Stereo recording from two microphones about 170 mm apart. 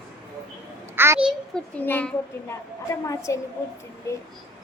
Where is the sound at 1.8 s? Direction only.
10° left (ahead or behind).